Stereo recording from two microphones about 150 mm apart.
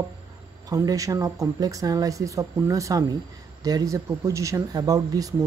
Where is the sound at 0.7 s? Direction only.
25° right (ahead or behind).